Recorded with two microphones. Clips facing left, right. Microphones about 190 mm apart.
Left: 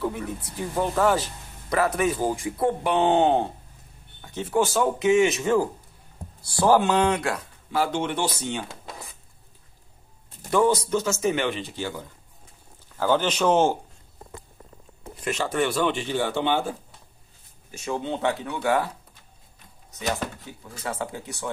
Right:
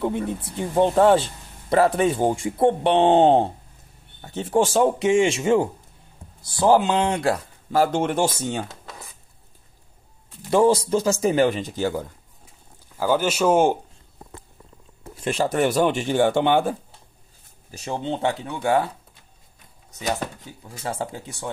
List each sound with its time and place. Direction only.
0.0 s speech: 25° right (ahead or behind)
7.7 s speech: 45° right (ahead or behind)
10.5 s speech: 30° right (ahead or behind); by 12.1 s 50° right (ahead or behind)
12.9 s a man's voice: 10° right (ahead or behind)
15.2 s speech: 35° right (ahead or behind); by 16.7 s 55° right (ahead or behind)
17.6 s speech: 35° right (ahead or behind)
20.8 s speech: 30° right (ahead or behind)